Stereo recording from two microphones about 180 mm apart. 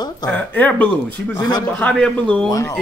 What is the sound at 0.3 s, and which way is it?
Speech, 10° left (ahead or behind).